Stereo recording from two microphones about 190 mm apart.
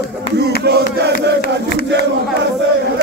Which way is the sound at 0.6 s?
60° right (ahead or behind).